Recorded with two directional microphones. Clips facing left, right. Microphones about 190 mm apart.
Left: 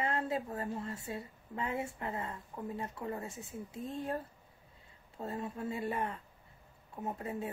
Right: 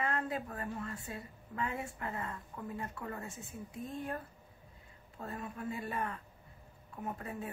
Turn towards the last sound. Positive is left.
turn(degrees=20)  # may be behind; listen again after turning